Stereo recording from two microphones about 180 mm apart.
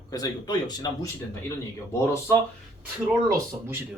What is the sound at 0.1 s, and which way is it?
Speech, 20° left (ahead or behind).